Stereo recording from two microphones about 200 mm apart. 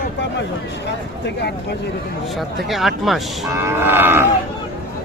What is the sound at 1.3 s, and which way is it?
Speech, 55° left (ahead or behind).